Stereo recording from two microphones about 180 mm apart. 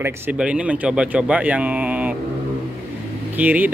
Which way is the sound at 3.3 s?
10° right (ahead or behind).